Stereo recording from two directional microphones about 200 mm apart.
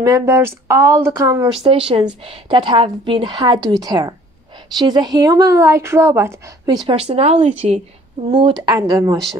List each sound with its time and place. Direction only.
0.0 s speech: 15° right (ahead or behind)
1.6 s a woman's voice: 30° right (ahead or behind)
6.9 s a woman's voice: 30° right (ahead or behind)